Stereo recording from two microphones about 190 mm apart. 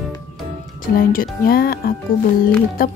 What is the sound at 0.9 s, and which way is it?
Speech, 50° left (ahead or behind).